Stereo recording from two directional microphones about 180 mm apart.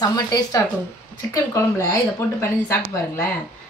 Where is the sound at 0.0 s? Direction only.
20° left (ahead or behind).